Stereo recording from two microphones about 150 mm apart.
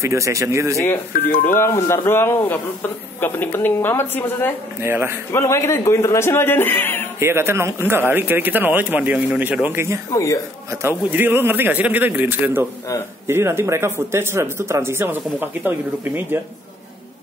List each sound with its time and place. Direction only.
0.0 s speech: 20° right (ahead or behind)
1.6 s speech: 15° left (ahead or behind)
4.8 s speech: 15° right (ahead or behind)
5.3 s speech: 15° left (ahead or behind)
7.2 s speech: 15° right (ahead or behind)
10.1 s speech: 20° left (ahead or behind)
10.7 s speech: 15° right (ahead or behind)